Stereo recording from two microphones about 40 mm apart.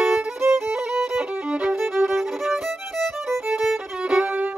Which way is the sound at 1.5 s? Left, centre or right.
Right.